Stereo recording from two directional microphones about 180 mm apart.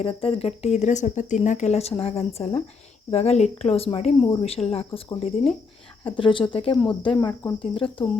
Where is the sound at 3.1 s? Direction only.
35° left (ahead or behind).